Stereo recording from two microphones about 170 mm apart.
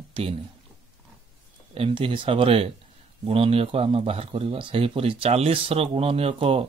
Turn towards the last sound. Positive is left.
turn(degrees=-35)  # may be behind; listen again after turning